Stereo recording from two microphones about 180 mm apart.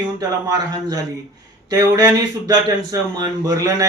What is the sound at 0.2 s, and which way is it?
A man's voice, 20° right (ahead or behind).